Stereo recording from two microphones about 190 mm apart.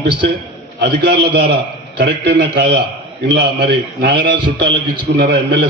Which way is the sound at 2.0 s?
60° right (ahead or behind).